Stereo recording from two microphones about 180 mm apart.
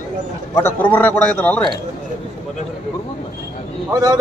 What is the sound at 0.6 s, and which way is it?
A man's voice, 10° left (ahead or behind).